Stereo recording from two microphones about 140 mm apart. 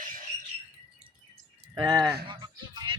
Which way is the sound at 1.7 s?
30° right (ahead or behind).